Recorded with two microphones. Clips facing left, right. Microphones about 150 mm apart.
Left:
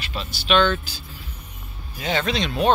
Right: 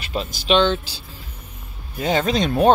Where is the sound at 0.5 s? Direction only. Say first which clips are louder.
Right 2 dB; 25° right (ahead or behind).